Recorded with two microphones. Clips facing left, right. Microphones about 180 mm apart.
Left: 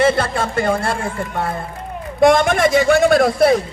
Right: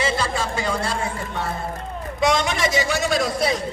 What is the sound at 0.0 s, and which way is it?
A man's voice, 55° left (ahead or behind).